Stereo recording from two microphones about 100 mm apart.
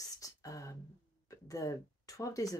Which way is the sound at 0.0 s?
35° left (ahead or behind).